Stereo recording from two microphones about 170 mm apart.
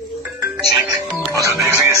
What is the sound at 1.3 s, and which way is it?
Speech, 15° right (ahead or behind).